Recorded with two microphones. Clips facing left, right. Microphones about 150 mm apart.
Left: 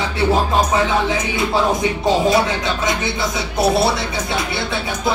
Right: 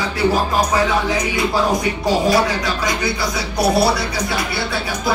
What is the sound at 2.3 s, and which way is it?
Music, 25° left (ahead or behind).